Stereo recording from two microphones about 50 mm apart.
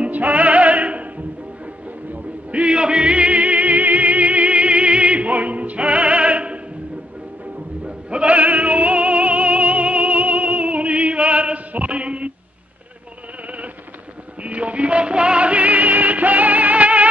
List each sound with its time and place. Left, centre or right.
0.0 s music: right
2.5 s music: right
7.8 s music: right
14.4 s music: right